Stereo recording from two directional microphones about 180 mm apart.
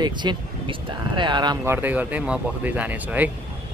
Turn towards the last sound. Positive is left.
turn(degrees=-10)  # may be behind; listen again after turning